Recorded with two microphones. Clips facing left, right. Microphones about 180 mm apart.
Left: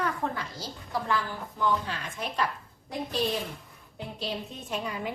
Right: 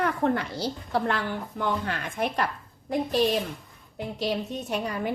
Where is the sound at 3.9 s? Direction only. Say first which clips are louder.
Right 6 dB; 75° right (ahead or behind).